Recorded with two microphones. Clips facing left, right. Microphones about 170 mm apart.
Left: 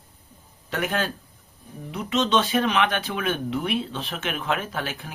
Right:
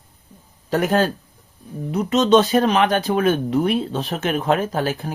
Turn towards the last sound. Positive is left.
turn(degrees=-40)  # may be behind; listen again after turning